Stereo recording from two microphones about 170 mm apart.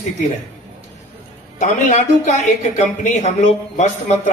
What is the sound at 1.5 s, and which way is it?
Speech, 45° left (ahead or behind).